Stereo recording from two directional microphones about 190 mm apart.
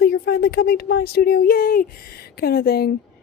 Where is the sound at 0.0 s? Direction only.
55° left (ahead or behind).